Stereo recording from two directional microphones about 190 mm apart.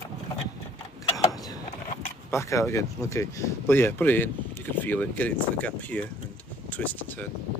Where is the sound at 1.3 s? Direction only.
20° left (ahead or behind).